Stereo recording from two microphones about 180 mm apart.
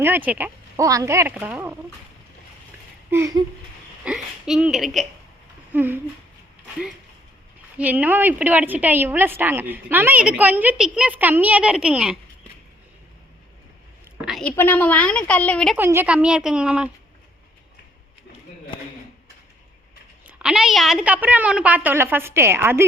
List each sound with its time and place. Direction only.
0.0 s a woman's voice: 10° right (ahead or behind)
3.1 s a woman's voice: 15° right (ahead or behind)
4.0 s speech: 5° right (ahead or behind)
5.7 s a woman's voice: 10° right (ahead or behind)
7.8 s a woman's voice: 10° right (ahead or behind)
14.3 s a woman's voice: centre (ahead or behind)
14.5 s a woman's voice: 10° left (ahead or behind)
15.8 s a woman's voice: 15° right (ahead or behind)
20.2 s a woman's voice: 5° right (ahead or behind)